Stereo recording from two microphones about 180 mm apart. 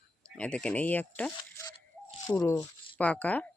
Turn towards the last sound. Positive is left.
turn(degrees=10)  # may be behind; listen again after turning